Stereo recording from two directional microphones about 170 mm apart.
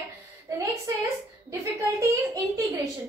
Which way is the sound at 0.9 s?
15° right (ahead or behind).